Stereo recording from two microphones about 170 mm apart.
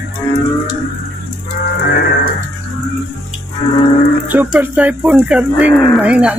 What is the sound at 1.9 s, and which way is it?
Music, 70° left (ahead or behind).